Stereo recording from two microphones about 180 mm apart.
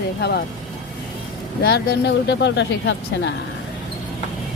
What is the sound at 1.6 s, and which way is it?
Speech, 65° left (ahead or behind).